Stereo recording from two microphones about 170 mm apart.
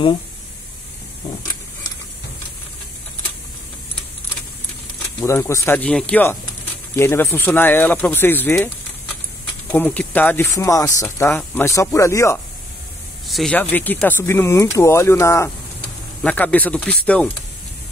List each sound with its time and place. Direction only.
5.2 s speech: 15° left (ahead or behind)
9.7 s speech: 5° left (ahead or behind)
13.3 s speech: 5° left (ahead or behind)